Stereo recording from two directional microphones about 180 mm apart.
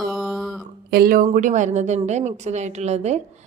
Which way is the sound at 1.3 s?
45° right (ahead or behind).